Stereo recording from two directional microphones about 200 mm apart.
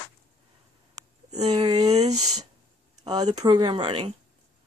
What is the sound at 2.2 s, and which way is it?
Speech, 90° right.